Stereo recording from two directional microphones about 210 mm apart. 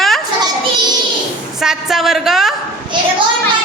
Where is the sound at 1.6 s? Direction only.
Centre (ahead or behind).